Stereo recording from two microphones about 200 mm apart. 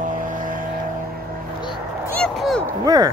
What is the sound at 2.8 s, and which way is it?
Speech, 20° right (ahead or behind).